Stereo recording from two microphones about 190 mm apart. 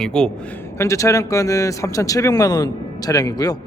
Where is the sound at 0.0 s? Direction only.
5° left (ahead or behind).